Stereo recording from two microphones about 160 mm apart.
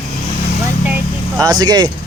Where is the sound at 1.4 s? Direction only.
25° right (ahead or behind).